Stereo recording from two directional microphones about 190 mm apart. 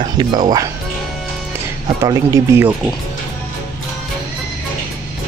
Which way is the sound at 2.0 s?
15° right (ahead or behind).